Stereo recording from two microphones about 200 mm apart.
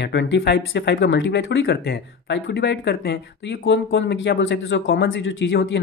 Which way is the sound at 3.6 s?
65° left (ahead or behind).